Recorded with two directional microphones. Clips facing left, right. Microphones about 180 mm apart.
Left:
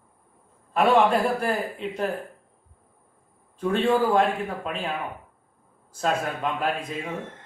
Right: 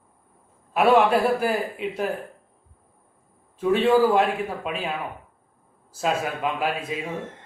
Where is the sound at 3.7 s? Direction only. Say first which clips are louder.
Right 3 dB; 5° right (ahead or behind).